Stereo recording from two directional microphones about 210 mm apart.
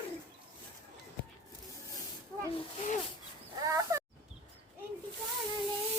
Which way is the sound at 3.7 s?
15° right (ahead or behind).